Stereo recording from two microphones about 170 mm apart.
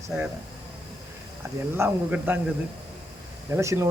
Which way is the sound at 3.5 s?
15° right (ahead or behind).